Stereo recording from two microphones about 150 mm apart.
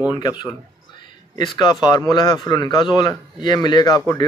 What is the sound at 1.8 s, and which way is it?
Speech, 30° left (ahead or behind).